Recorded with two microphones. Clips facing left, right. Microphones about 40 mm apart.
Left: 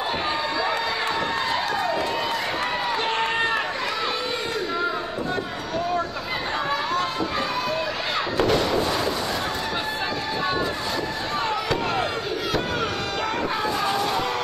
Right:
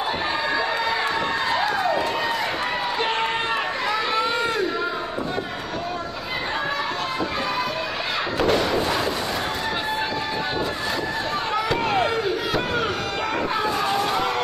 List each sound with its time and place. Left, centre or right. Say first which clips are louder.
8.4 s thump: right 1 dB; centre
11.7 s crowd: right 5 dB; centre